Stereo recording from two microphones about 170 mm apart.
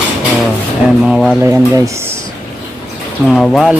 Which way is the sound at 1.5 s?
20° right (ahead or behind).